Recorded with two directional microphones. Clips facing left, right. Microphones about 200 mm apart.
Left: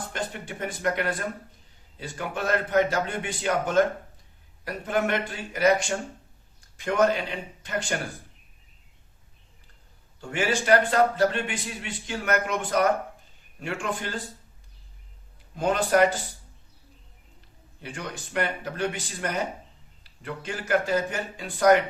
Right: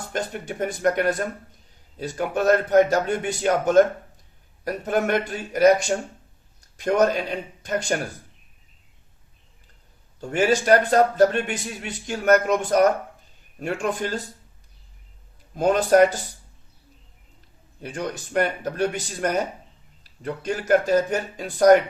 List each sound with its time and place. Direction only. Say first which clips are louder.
0.1 s a man's voice: right 5 dB; 45° right (ahead or behind)
6.7 s a man's voice: right 3 dB; 40° right (ahead or behind)
10.2 s a man's voice: right 6 dB; 40° right (ahead or behind)
15.5 s a man's voice: right 5 dB; 40° right (ahead or behind)
17.9 s a man's voice: right 6 dB; 45° right (ahead or behind)